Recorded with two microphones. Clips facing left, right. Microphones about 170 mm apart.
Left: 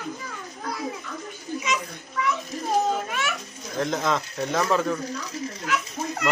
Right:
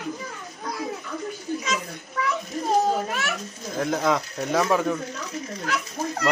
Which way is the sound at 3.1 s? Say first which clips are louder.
Even; 40° right (ahead or behind).